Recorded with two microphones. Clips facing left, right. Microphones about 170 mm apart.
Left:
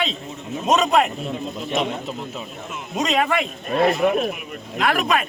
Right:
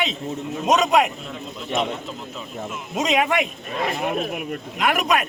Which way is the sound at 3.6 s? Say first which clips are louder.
Left 7 dB; 45° left (ahead or behind).